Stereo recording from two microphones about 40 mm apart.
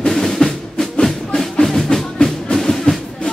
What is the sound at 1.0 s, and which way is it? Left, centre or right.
Music, centre.